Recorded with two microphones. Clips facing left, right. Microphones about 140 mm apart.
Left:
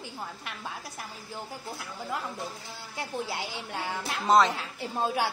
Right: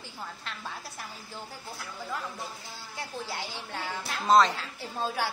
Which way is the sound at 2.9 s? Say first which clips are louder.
Left 3 dB; 20° left (ahead or behind).